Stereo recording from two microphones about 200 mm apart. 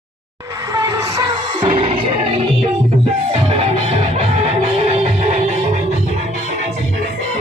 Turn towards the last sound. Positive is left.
turn(degrees=-30)  # may be behind; listen again after turning